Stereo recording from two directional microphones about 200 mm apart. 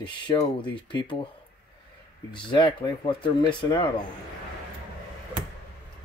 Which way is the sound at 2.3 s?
25° left (ahead or behind).